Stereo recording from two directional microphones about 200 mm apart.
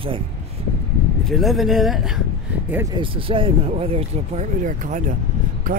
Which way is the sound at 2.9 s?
25° right (ahead or behind).